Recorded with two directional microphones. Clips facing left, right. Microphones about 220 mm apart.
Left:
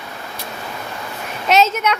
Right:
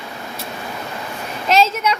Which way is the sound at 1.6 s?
30° right (ahead or behind).